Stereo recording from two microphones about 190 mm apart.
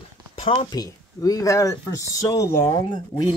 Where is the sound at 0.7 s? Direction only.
20° left (ahead or behind).